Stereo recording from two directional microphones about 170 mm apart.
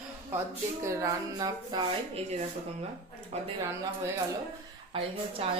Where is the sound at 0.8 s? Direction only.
20° right (ahead or behind).